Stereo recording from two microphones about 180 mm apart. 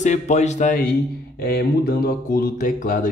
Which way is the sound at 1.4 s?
60° left (ahead or behind).